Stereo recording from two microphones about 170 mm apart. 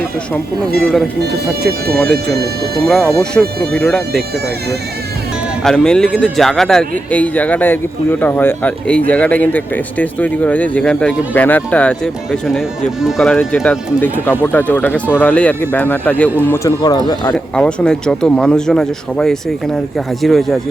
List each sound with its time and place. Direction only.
0.8 s speech: centre (ahead or behind)
2.1 s speech: 70° right (ahead or behind)
2.8 s speech: 5° left (ahead or behind)
5.6 s a man's voice: 5° left (ahead or behind)
16.5 s speech: 20° left (ahead or behind)
17.3 s speech: 5° left (ahead or behind)